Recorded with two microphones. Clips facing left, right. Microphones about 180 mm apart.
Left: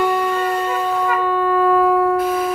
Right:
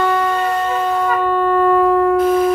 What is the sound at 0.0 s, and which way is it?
Shofar, 10° left (ahead or behind).